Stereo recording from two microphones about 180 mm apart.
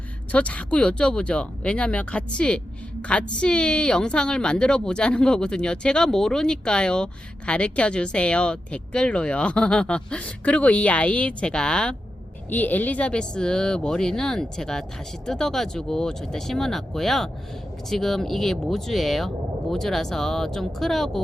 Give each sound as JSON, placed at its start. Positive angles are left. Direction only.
{"t": 0.3, "sound": "a woman's voice", "side_deg": 5}